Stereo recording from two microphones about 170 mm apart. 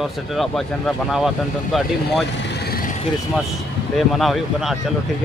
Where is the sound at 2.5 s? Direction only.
60° left (ahead or behind).